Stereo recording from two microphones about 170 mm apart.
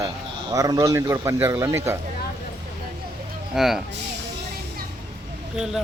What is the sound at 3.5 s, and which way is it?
Speech, centre (ahead or behind).